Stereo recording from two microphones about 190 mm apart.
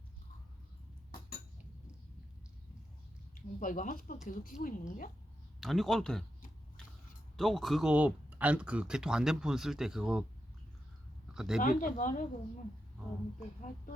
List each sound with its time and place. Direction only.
3.3 s a woman's voice: 45° left (ahead or behind)
5.5 s speech: centre (ahead or behind)
7.3 s speech: centre (ahead or behind)
11.3 s speech: 5° right (ahead or behind)
11.6 s a woman's voice: 45° left (ahead or behind)